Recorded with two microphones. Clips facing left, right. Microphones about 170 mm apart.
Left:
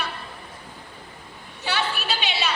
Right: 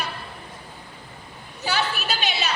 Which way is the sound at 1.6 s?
40° right (ahead or behind).